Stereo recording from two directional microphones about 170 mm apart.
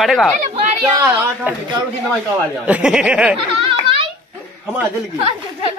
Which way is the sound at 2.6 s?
5° right (ahead or behind).